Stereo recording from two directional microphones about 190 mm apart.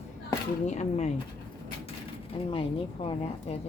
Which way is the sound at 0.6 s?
35° left (ahead or behind).